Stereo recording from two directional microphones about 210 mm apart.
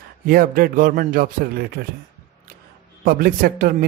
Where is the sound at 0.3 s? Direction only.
45° right (ahead or behind).